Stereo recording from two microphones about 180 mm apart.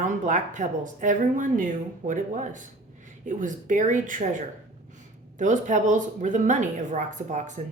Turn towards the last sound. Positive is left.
turn(degrees=-40)  # may be behind; listen again after turning